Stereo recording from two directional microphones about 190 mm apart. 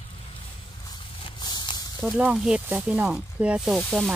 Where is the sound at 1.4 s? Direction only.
20° left (ahead or behind).